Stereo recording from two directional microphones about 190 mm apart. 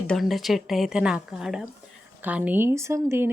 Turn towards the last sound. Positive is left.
turn(degrees=-15)  # may be behind; listen again after turning